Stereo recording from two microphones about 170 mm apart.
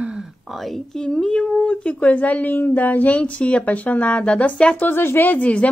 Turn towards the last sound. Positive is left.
turn(degrees=10)  # may be behind; listen again after turning